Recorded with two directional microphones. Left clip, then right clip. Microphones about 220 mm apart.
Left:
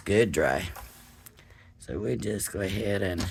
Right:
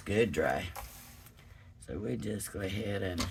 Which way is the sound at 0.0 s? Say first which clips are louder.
Left 6 dB; 45° left (ahead or behind).